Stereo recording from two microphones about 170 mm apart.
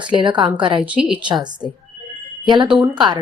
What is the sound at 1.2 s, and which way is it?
Speech, 25° right (ahead or behind).